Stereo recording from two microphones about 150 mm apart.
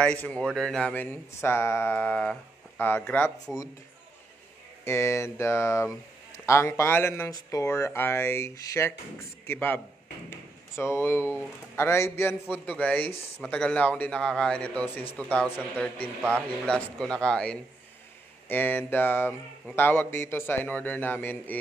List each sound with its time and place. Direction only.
0.0 s a man's voice: 10° left (ahead or behind)
4.8 s a man's voice: 20° left (ahead or behind)
10.8 s a man's voice: 20° left (ahead or behind)